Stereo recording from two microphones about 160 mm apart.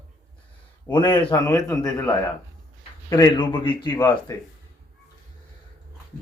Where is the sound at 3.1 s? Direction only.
30° left (ahead or behind).